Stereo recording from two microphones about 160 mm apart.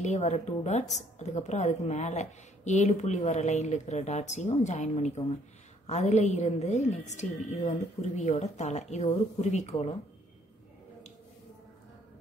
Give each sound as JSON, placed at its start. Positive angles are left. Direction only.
{"t": 0.0, "sound": "a woman's voice", "side_deg": 45}